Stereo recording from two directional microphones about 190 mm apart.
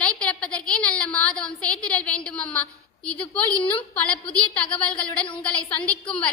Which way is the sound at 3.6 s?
25° left (ahead or behind).